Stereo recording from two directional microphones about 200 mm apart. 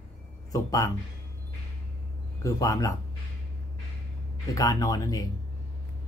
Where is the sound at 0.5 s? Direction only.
15° left (ahead or behind).